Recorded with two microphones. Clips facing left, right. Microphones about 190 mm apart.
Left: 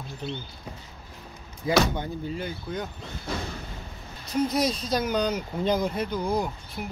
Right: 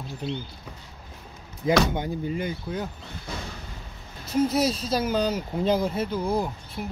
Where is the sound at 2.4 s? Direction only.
5° right (ahead or behind).